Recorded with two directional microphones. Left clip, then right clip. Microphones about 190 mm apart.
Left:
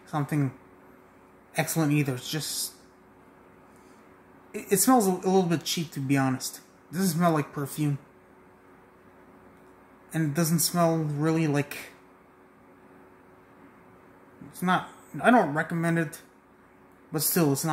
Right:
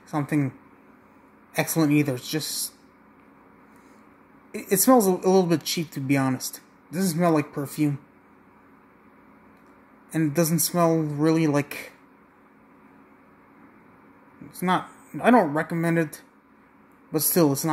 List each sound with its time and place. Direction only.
0.1 s speech: 10° right (ahead or behind)
1.5 s speech: 15° right (ahead or behind)
4.5 s speech: 15° right (ahead or behind)
10.1 s speech: 15° right (ahead or behind)
14.5 s speech: 15° right (ahead or behind)